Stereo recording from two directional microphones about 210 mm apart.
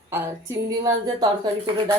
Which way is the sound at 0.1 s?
10° right (ahead or behind).